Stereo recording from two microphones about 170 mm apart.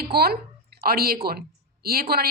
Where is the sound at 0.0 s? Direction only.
65° right (ahead or behind).